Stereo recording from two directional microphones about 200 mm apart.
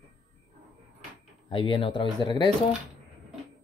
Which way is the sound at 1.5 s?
25° left (ahead or behind).